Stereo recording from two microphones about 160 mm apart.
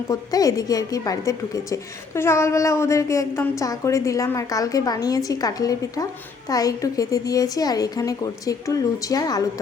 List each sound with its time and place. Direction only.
0.1 s a woman's voice: 25° left (ahead or behind)